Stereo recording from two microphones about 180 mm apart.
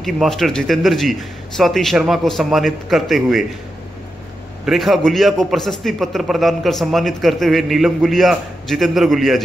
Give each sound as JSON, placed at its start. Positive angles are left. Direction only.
{"t": 0.0, "sound": "a man's voice", "side_deg": 0}
{"t": 4.6, "sound": "a man's voice", "side_deg": 0}